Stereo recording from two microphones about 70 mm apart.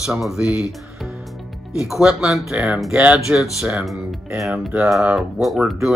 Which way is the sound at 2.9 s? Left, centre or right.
Centre.